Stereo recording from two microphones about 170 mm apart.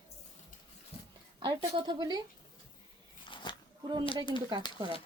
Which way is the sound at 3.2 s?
30° left (ahead or behind).